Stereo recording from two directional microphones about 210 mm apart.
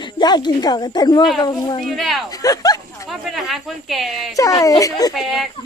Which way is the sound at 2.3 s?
15° left (ahead or behind).